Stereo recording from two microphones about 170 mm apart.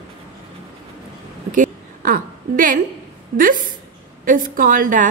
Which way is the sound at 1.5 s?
50° right (ahead or behind).